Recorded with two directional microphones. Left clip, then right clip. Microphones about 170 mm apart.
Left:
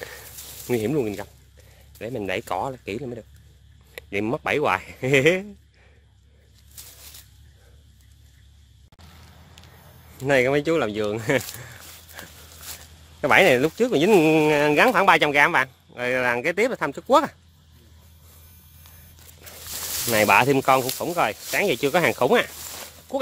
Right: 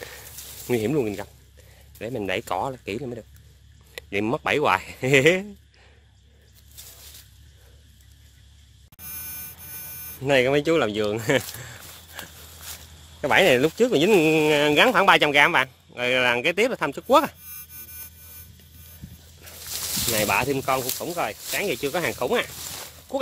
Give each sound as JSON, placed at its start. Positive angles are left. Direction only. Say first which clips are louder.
{"t": 0.7, "sound": "speech", "louder": "even", "side_deg": 5}
{"t": 10.2, "sound": "speech", "louder": "even", "side_deg": 5}
{"t": 13.2, "sound": "speech", "louder": "left 2 dB", "side_deg": 20}
{"t": 13.6, "sound": "speech", "louder": "right 1 dB", "side_deg": 0}
{"t": 14.0, "sound": "speech", "louder": "left 3 dB", "side_deg": 25}
{"t": 20.1, "sound": "speech", "louder": "left 6 dB", "side_deg": 40}